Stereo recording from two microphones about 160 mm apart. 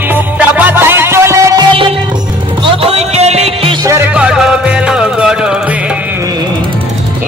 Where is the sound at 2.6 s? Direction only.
40° right (ahead or behind).